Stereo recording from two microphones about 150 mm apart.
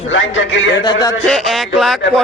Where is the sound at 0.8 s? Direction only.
25° left (ahead or behind).